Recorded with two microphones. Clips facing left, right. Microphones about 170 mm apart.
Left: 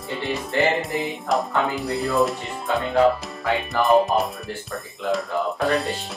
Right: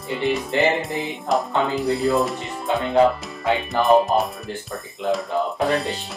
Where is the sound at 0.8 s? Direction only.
Centre (ahead or behind).